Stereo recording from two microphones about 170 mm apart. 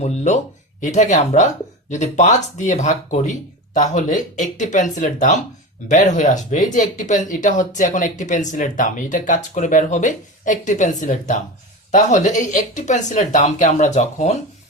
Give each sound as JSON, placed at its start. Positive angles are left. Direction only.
{"t": 0.0, "sound": "speech", "side_deg": 40}